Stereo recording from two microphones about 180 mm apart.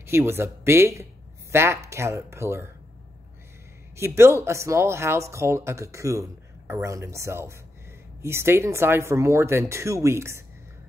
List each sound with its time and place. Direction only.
0.0 s speech: 15° right (ahead or behind)
3.9 s speech: 15° right (ahead or behind)